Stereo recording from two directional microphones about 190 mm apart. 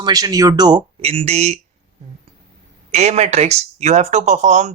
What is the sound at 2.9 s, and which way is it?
Speech, 35° right (ahead or behind).